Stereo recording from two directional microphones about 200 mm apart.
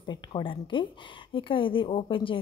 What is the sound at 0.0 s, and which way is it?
A woman's voice, 20° left (ahead or behind).